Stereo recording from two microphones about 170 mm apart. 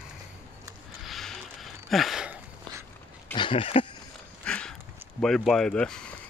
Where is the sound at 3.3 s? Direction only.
30° left (ahead or behind).